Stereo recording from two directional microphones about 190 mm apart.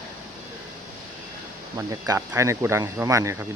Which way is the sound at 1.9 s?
15° right (ahead or behind).